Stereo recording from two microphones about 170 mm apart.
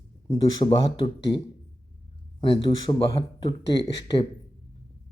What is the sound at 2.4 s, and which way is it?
Speech, 30° left (ahead or behind).